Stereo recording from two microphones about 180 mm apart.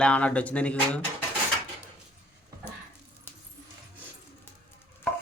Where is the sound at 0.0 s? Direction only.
5° left (ahead or behind).